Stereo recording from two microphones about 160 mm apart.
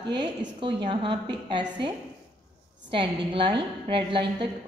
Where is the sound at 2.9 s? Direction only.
30° right (ahead or behind).